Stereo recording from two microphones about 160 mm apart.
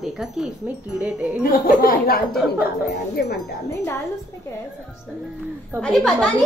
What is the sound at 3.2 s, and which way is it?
Speech, 85° left.